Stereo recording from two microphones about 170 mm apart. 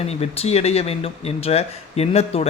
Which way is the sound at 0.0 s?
35° left (ahead or behind).